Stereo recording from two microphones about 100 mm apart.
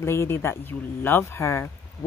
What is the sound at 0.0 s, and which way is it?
Speech, 25° left (ahead or behind).